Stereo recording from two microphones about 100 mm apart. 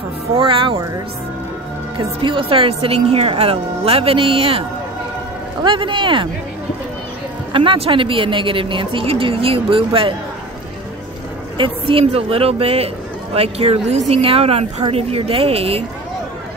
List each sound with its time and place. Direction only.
0.3 s speech: 60° right (ahead or behind)
2.0 s speech: 60° right (ahead or behind)
5.6 s speech: 55° right (ahead or behind)
7.5 s speech: 65° right (ahead or behind)
11.5 s speech: 60° right (ahead or behind)